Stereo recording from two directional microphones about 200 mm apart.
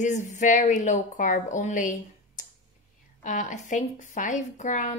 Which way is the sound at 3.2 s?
40° left (ahead or behind).